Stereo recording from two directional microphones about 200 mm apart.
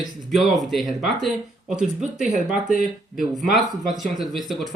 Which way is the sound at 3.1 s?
Centre (ahead or behind).